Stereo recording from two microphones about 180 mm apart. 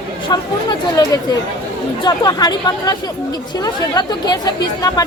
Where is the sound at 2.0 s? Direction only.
20° left (ahead or behind).